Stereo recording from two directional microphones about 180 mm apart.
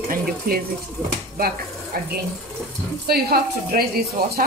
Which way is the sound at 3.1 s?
60° right (ahead or behind).